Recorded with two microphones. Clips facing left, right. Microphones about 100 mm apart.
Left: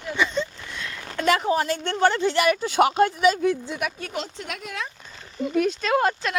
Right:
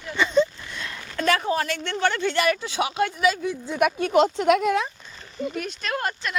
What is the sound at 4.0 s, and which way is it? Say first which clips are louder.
Speech: right 13 dB; 70° right (ahead or behind).